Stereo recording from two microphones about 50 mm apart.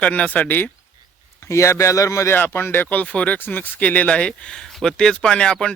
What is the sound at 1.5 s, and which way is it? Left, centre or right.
Speech, left.